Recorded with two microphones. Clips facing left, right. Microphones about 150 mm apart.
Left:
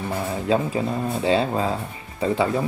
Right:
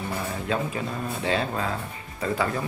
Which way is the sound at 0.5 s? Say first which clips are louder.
Left 7 dB; 30° left (ahead or behind).